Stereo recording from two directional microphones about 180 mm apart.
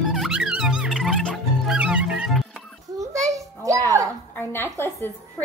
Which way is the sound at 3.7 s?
20° right (ahead or behind).